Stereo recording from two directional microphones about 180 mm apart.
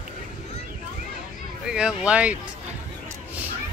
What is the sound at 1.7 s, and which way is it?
Speech, 5° right (ahead or behind).